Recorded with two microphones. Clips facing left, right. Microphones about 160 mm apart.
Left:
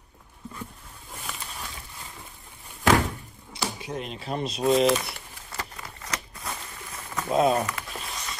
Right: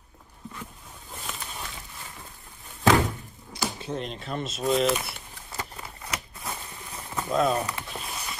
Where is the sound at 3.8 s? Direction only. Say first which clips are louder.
Right 1 dB; 10° left (ahead or behind).